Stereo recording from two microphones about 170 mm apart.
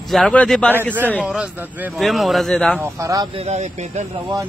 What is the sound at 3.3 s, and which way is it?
Speech, 40° right (ahead or behind).